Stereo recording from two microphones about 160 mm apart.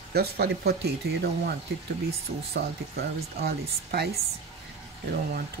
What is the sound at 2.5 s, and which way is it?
Speech, 80° right.